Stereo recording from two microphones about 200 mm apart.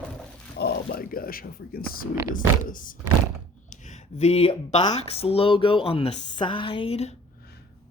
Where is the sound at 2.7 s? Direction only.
40° left (ahead or behind).